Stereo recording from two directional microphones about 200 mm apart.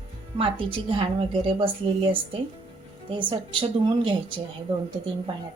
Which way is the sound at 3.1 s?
25° right (ahead or behind).